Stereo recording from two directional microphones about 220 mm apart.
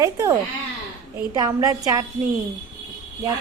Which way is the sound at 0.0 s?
15° right (ahead or behind).